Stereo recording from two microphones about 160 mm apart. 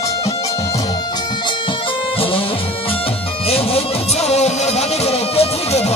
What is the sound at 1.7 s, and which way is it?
Music, 35° left (ahead or behind).